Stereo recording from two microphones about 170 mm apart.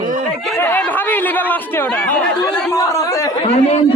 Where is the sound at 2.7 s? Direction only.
20° left (ahead or behind).